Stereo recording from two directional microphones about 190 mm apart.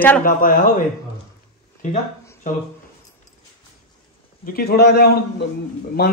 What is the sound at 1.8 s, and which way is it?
Speech, 40° left (ahead or behind).